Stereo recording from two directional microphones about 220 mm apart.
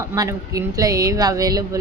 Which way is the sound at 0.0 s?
15° right (ahead or behind).